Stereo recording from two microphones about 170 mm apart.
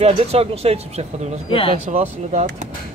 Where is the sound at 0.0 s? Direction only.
35° right (ahead or behind).